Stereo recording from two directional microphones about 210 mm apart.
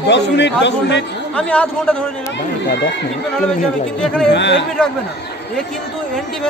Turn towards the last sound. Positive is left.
turn(degrees=55)  # may be behind; listen again after turning